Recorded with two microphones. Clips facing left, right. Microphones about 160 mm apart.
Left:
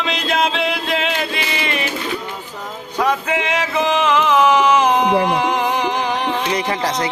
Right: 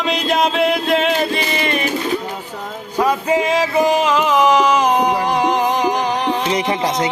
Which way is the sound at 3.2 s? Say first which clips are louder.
Right 4 dB; 35° right (ahead or behind).